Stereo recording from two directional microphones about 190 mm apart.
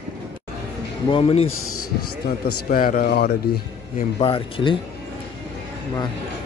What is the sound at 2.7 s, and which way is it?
Speech, 45° left (ahead or behind).